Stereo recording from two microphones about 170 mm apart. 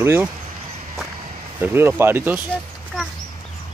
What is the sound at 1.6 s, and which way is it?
Speech, 15° right (ahead or behind).